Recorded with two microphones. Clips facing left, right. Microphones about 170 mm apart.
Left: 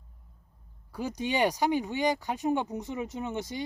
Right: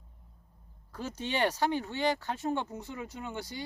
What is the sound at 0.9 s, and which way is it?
Speech, 15° left (ahead or behind).